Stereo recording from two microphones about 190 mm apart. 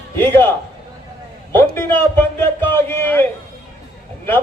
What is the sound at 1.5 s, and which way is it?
A man's voice, 10° left (ahead or behind).